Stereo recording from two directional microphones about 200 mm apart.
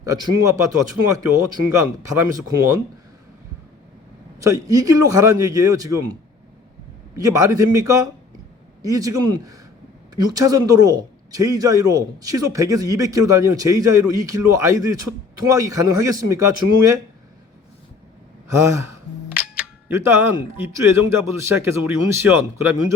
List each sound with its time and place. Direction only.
0.0 s a man's voice: 15° right (ahead or behind)
4.4 s a man's voice: 15° right (ahead or behind)
7.2 s a man's voice: 15° right (ahead or behind)
18.4 s a man's voice: 15° right (ahead or behind)